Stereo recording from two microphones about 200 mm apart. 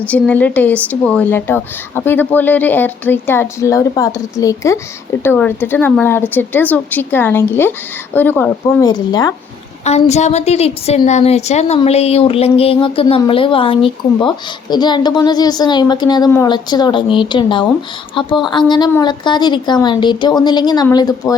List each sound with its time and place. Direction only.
0.1 s speech: 5° left (ahead or behind)
9.8 s a woman's voice: 35° left (ahead or behind)